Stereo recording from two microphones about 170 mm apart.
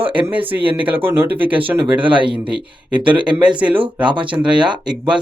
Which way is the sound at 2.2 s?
30° right (ahead or behind).